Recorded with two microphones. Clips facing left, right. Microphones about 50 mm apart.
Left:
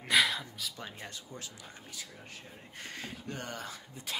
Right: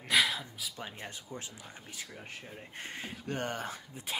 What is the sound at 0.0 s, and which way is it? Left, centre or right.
Gasp, centre.